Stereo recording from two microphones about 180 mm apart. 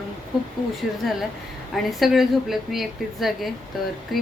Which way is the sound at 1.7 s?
Centre (ahead or behind).